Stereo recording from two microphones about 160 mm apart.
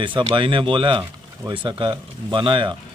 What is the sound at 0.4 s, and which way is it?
A man's voice, 30° right (ahead or behind).